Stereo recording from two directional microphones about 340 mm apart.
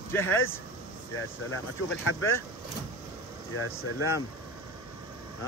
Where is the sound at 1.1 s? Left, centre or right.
Left.